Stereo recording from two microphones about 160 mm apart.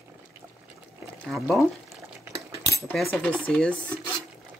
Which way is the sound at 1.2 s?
Centre (ahead or behind).